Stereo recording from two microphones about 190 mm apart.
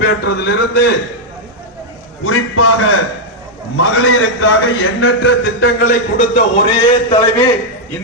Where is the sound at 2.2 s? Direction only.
90° left; by 5.9 s 70° left (ahead or behind).